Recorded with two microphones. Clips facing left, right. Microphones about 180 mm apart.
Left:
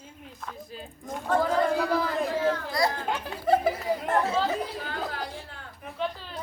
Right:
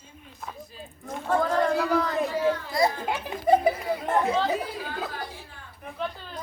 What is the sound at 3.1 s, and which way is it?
Chuckle, 15° right (ahead or behind).